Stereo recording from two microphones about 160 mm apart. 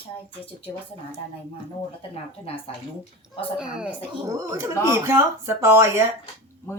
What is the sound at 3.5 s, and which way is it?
Speech, 5° right (ahead or behind).